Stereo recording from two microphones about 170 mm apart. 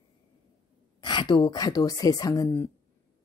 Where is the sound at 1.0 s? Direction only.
25° left (ahead or behind).